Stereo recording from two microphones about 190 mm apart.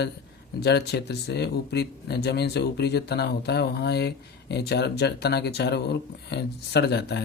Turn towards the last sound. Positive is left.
turn(degrees=60)  # may be behind; listen again after turning